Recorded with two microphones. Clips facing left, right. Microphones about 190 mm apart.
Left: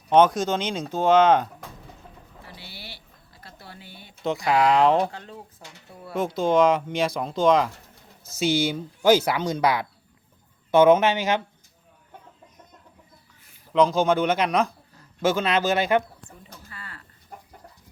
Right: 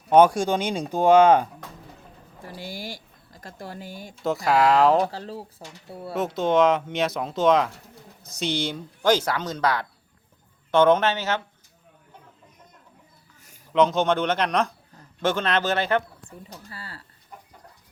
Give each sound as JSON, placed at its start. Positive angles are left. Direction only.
{"t": 0.1, "sound": "speech", "side_deg": -10}
{"t": 2.4, "sound": "a sound", "side_deg": -45}
{"t": 4.2, "sound": "speech", "side_deg": 0}
{"t": 5.1, "sound": "speech", "side_deg": -35}
{"t": 6.1, "sound": "speech", "side_deg": 0}
{"t": 13.7, "sound": "speech", "side_deg": 0}
{"t": 16.6, "sound": "a sound", "side_deg": -35}